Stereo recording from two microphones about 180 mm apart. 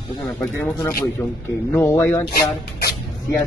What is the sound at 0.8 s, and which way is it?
Speech, 15° left (ahead or behind).